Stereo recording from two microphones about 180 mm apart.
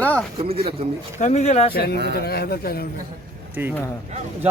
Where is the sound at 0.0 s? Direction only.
10° left (ahead or behind).